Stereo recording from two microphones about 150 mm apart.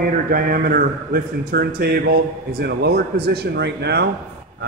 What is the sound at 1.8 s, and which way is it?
A man's voice, 90° right.